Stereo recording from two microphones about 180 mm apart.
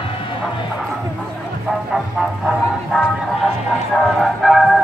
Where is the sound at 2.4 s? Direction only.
Centre (ahead or behind).